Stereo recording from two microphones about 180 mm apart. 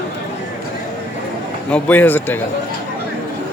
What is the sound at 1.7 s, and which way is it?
Speech, 10° left (ahead or behind).